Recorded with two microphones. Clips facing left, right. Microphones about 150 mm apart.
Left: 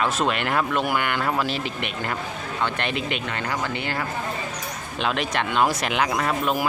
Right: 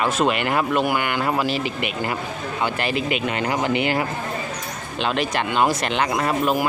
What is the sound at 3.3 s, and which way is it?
Speech, 20° right (ahead or behind).